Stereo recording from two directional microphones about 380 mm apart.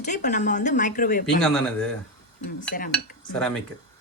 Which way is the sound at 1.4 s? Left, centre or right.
Centre.